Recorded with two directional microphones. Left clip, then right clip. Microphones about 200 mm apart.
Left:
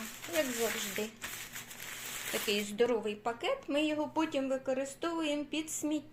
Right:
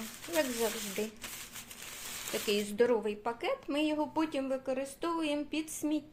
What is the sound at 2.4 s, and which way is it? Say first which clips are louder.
Speech: right 2 dB; 20° right (ahead or behind).